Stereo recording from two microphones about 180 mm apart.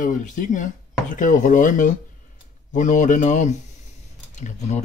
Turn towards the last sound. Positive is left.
turn(degrees=40)  # may be behind; listen again after turning